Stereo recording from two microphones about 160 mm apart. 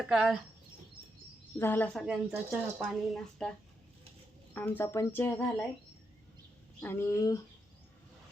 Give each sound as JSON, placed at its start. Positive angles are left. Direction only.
{"t": 0.1, "sound": "a woman's voice", "side_deg": -5}
{"t": 1.5, "sound": "speech", "side_deg": 10}
{"t": 2.3, "sound": "speech", "side_deg": -10}
{"t": 3.1, "sound": "a woman's voice", "side_deg": 5}
{"t": 4.5, "sound": "speech", "side_deg": 10}
{"t": 6.8, "sound": "speech", "side_deg": 15}